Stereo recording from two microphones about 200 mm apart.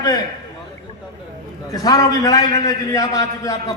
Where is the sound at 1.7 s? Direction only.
20° left (ahead or behind).